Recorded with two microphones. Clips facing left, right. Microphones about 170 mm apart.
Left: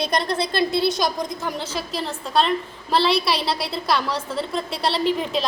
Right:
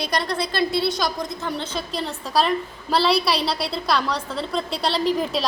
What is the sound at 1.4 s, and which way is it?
A woman's voice, 5° left (ahead or behind).